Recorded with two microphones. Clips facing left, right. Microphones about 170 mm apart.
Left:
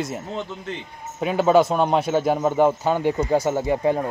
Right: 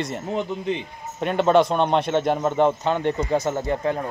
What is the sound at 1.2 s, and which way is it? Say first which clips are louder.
A man's voice: left 1 dB; 5° left (ahead or behind).